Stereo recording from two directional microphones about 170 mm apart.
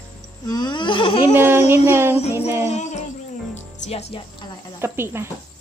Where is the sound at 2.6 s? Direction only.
40° left (ahead or behind).